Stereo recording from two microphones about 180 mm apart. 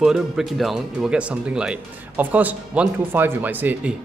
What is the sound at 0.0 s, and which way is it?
Speech, 5° right (ahead or behind).